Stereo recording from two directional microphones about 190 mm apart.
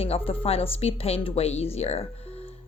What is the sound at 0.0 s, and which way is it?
Speech, 30° left (ahead or behind).